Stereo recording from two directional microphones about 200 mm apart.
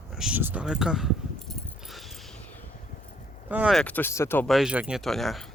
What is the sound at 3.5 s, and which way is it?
Speech, 5° right (ahead or behind).